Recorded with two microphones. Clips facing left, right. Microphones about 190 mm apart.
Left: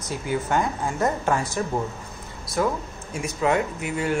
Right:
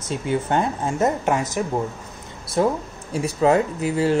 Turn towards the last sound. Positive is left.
turn(degrees=-30)  # may be behind; listen again after turning